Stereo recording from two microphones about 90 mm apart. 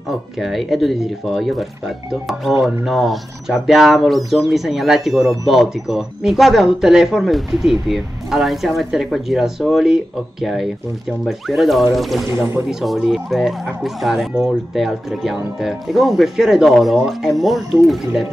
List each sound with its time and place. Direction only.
0.4 s speech: centre (ahead or behind)
12.3 s speech: 35° right (ahead or behind)
12.6 s speech: centre (ahead or behind)